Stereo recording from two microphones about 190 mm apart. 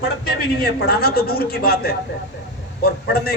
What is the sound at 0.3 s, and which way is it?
A man's voice, 55° left (ahead or behind).